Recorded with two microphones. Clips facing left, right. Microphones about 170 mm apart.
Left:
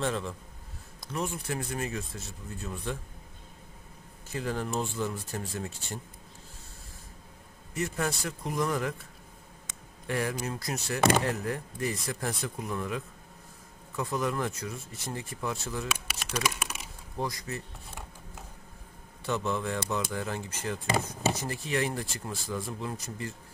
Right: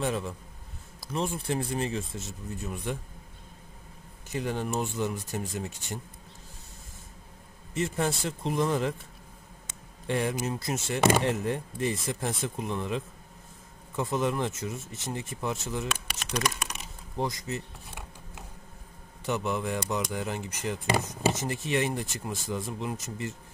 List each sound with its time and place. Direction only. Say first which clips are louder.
0.0 s a man's voice: right 1 dB; 15° right (ahead or behind)
1.1 s speech: right 3 dB; 30° right (ahead or behind)
4.3 s speech: right 2 dB; 20° right (ahead or behind)
7.7 s speech: right 3 dB; 25° right (ahead or behind)
10.0 s speech: right 3 dB; 25° right (ahead or behind)
16.3 s crumpling: right 1 dB; 5° left (ahead or behind)
17.2 s speech: right 3 dB; 20° right (ahead or behind)
19.2 s speech: right 1 dB; 15° right (ahead or behind)